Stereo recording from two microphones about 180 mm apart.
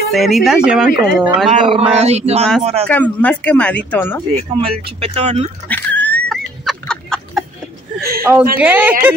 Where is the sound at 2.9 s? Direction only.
10° left (ahead or behind).